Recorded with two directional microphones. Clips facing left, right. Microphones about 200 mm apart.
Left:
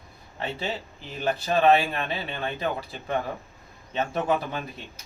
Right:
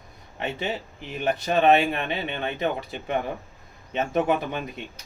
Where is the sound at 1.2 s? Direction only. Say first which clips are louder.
Right 1 dB; 20° right (ahead or behind).